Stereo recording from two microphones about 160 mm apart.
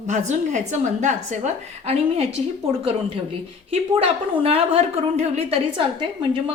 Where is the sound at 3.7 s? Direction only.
40° right (ahead or behind).